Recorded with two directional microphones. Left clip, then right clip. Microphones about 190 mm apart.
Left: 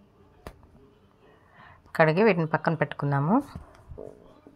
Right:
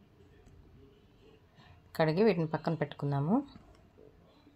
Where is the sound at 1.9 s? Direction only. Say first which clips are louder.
Left 7 dB; 20° left (ahead or behind).